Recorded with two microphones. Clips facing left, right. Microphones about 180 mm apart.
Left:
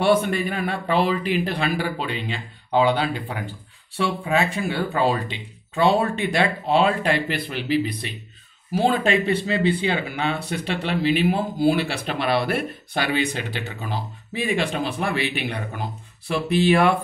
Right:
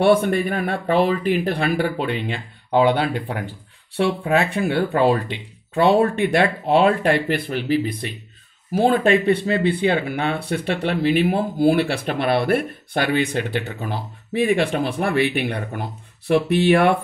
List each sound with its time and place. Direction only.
0.0 s speech: 55° right (ahead or behind)